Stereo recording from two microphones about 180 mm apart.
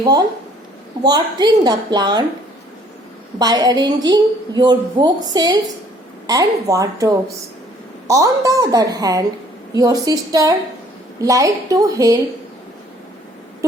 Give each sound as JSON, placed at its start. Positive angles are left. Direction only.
{"t": 1.0, "sound": "a woman's voice", "side_deg": -25}
{"t": 3.3, "sound": "a woman's voice", "side_deg": -20}